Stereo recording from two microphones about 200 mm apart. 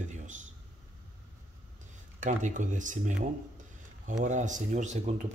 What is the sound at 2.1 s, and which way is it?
Speech, 40° right (ahead or behind).